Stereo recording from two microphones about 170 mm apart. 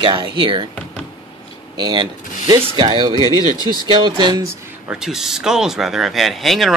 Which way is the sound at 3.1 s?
20° left (ahead or behind).